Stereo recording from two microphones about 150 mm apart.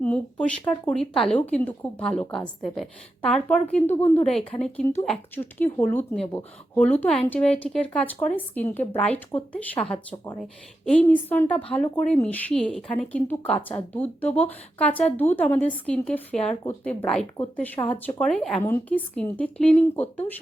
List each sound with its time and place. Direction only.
0.0 s a woman's voice: 10° left (ahead or behind)
10.8 s a woman's voice: 10° left (ahead or behind)